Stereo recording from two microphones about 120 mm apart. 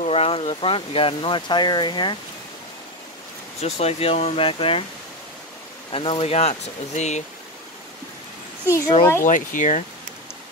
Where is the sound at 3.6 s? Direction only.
60° left (ahead or behind).